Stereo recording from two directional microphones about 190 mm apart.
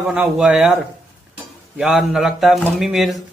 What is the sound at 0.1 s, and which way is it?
Speech, 5° right (ahead or behind).